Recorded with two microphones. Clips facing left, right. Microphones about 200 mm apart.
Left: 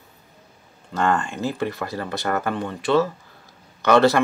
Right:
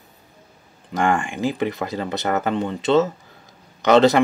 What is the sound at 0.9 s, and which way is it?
Speech, 15° right (ahead or behind).